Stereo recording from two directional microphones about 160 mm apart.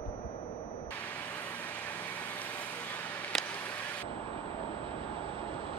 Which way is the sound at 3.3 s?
Centre (ahead or behind).